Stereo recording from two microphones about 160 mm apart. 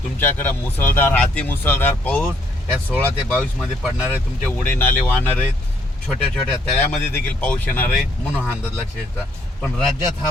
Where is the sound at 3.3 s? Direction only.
5° right (ahead or behind).